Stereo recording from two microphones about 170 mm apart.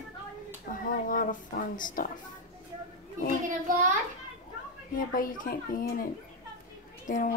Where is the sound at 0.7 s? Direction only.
55° left (ahead or behind).